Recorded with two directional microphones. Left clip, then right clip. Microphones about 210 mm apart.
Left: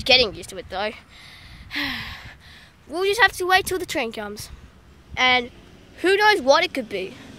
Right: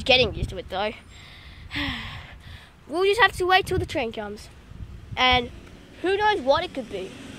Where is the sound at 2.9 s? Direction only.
Centre (ahead or behind).